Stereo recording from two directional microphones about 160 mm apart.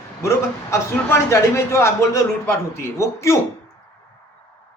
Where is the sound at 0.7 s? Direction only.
15° left (ahead or behind).